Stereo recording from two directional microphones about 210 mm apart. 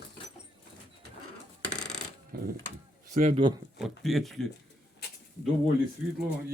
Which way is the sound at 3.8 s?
Centre (ahead or behind).